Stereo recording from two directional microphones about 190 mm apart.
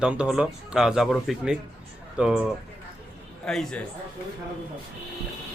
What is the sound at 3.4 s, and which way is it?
Speech, 5° left (ahead or behind).